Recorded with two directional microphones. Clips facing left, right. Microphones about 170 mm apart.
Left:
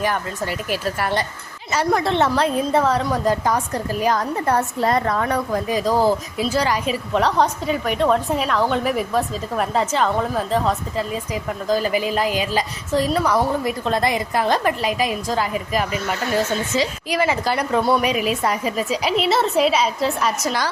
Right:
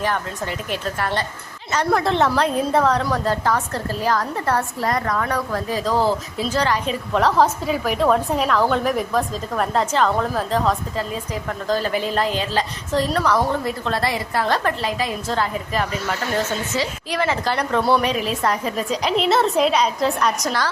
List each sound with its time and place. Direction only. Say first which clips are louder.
0.0 s a woman's voice: left 1 dB; 5° left (ahead or behind)
3.1 s a woman's voice: left 1 dB; 15° left (ahead or behind)
7.1 s a woman's voice: right 2 dB; centre (ahead or behind)